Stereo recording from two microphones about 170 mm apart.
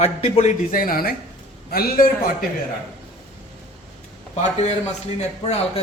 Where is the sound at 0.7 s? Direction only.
55° left (ahead or behind).